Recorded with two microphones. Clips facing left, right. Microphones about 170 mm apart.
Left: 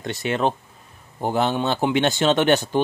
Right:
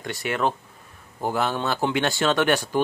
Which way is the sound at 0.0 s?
25° left (ahead or behind).